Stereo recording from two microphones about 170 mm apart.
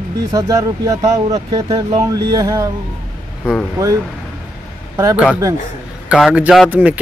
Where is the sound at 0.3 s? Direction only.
20° right (ahead or behind).